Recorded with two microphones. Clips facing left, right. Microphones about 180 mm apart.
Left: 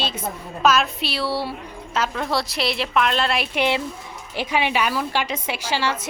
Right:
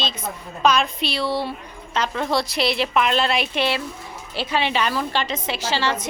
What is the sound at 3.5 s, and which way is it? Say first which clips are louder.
A woman's voice: left 1 dB; 15° left (ahead or behind).